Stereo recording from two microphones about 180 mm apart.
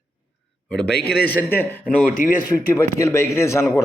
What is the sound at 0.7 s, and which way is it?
Speech, 5° left (ahead or behind).